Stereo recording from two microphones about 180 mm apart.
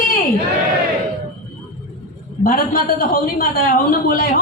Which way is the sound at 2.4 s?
50° left (ahead or behind).